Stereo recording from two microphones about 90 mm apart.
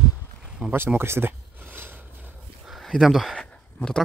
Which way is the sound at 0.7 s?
25° right (ahead or behind).